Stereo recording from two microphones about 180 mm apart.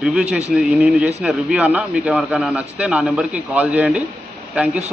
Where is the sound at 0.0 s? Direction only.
5° right (ahead or behind).